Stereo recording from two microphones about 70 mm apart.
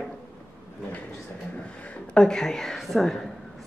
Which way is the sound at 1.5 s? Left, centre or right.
Left.